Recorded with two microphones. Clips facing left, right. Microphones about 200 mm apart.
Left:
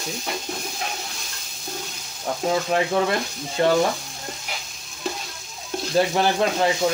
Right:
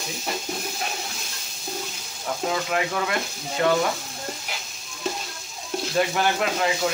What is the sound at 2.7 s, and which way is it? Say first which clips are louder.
Speech: left 4 dB; 30° left (ahead or behind).